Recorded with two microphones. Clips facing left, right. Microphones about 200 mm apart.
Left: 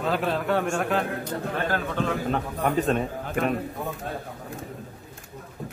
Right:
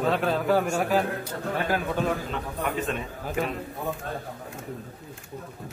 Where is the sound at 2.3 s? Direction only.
45° left (ahead or behind).